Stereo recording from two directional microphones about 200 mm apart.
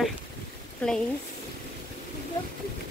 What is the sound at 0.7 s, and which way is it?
Speech, 5° left (ahead or behind).